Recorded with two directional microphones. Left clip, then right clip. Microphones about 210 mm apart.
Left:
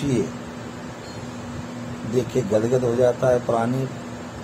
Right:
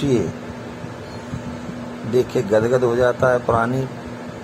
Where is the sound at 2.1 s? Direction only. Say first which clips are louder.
Right 4 dB; 15° right (ahead or behind).